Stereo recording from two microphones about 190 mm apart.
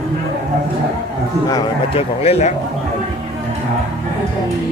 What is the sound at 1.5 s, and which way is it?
Speech, 20° left (ahead or behind).